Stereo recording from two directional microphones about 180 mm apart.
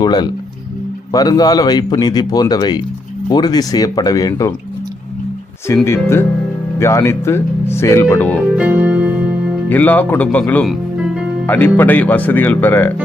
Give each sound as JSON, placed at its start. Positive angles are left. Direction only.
{"t": 0.0, "sound": "a man's voice", "side_deg": 25}
{"t": 5.6, "sound": "speech", "side_deg": 15}
{"t": 8.5, "sound": "keyboard", "side_deg": -10}
{"t": 9.6, "sound": "speech", "side_deg": 10}
{"t": 10.9, "sound": "music", "side_deg": -5}
{"t": 11.4, "sound": "speech", "side_deg": 10}